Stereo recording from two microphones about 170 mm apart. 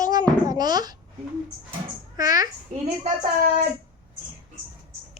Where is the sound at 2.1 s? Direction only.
20° right (ahead or behind).